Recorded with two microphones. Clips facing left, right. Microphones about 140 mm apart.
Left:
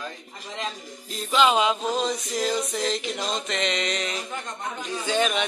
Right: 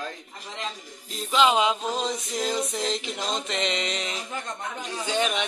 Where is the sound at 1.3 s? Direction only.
20° right (ahead or behind).